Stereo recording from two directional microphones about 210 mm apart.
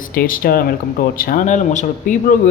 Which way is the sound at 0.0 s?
40° left (ahead or behind).